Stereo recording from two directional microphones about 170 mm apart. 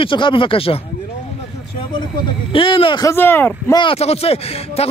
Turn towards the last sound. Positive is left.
turn(degrees=35)  # may be behind; listen again after turning